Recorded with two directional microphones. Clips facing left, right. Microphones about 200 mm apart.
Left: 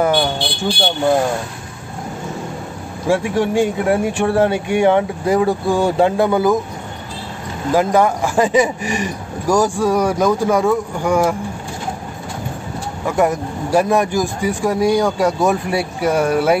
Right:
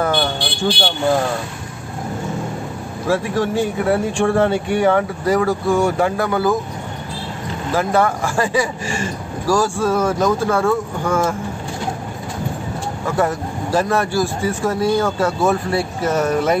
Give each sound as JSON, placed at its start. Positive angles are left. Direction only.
{"t": 0.0, "sound": "vehicle", "side_deg": 10}
{"t": 3.1, "sound": "a man's voice", "side_deg": 15}
{"t": 5.7, "sound": "speech", "side_deg": 30}
{"t": 7.7, "sound": "a man's voice", "side_deg": 15}
{"t": 13.0, "sound": "a man's voice", "side_deg": 15}